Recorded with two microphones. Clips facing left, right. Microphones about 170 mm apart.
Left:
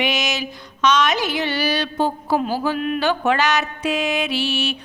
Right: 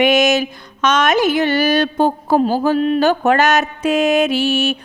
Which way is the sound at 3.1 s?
45° right (ahead or behind).